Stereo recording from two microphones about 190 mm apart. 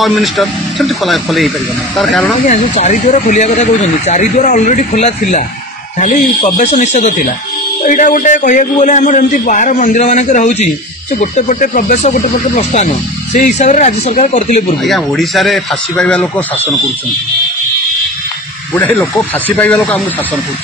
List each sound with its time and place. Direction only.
0.0 s speech: centre (ahead or behind)
2.4 s speech: 40° left (ahead or behind)
14.8 s speech: centre (ahead or behind)
18.7 s speech: 10° left (ahead or behind)